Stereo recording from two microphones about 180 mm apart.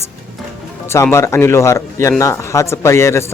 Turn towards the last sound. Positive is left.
turn(degrees=15)  # may be behind; listen again after turning